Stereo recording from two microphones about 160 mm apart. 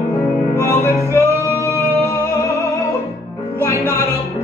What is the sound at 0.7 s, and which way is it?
Music, 15° left (ahead or behind).